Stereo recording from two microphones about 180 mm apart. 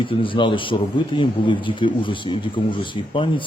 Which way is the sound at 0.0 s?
30° left (ahead or behind).